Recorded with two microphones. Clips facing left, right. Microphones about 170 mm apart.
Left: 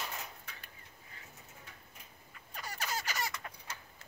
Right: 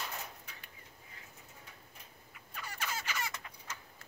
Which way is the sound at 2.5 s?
40° left (ahead or behind).